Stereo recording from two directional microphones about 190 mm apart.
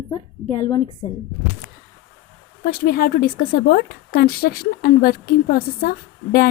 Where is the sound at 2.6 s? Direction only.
50° left (ahead or behind).